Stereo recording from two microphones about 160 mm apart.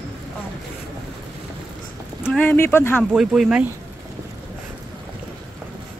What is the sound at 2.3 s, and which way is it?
Speech, 10° left (ahead or behind).